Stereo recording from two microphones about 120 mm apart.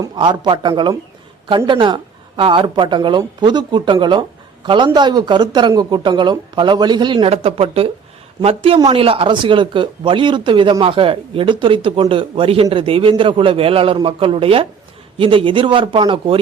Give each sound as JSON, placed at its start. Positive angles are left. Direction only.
{"t": 0.2, "sound": "speech", "side_deg": -40}
{"t": 7.3, "sound": "speech", "side_deg": -55}